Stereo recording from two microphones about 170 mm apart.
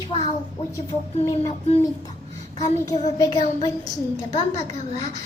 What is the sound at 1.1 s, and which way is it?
Child singing, 40° left (ahead or behind).